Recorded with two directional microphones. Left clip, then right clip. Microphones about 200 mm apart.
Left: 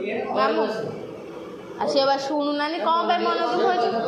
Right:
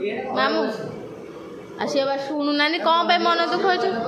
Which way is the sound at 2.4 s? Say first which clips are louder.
Right 3 dB; 30° right (ahead or behind).